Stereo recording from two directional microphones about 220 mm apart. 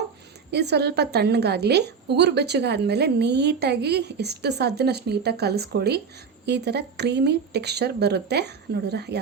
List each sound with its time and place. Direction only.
0.5 s a woman's voice: 50° right (ahead or behind)